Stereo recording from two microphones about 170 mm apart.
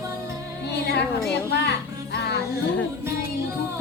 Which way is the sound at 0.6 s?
80° left.